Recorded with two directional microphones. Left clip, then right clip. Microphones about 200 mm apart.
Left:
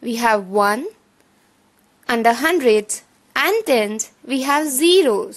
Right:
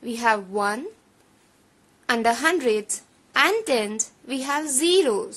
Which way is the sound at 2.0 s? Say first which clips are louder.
Left 5 dB; 25° left (ahead or behind).